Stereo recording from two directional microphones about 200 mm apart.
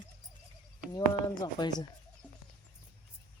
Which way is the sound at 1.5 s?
20° left (ahead or behind).